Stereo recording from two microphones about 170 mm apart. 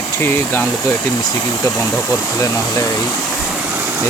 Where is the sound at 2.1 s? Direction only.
15° left (ahead or behind).